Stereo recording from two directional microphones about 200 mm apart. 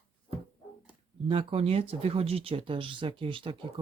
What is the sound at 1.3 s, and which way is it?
Speech, 25° right (ahead or behind).